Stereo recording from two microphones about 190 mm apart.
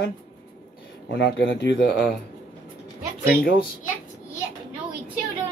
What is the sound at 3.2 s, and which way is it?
Speech, 50° left (ahead or behind).